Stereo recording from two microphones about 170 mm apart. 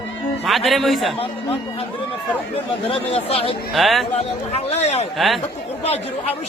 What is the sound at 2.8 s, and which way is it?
Speech, 35° left (ahead or behind).